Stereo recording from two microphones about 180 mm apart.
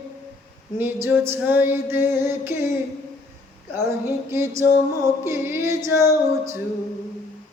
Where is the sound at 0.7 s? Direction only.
10° right (ahead or behind).